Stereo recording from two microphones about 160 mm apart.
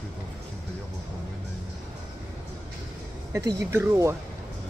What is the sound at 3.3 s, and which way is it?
Speech, 15° right (ahead or behind).